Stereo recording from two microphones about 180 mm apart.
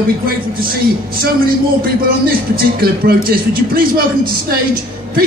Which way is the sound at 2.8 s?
55° right (ahead or behind).